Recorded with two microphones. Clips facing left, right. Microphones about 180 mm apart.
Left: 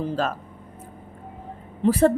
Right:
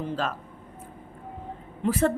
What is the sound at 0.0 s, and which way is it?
Speech, 40° left (ahead or behind).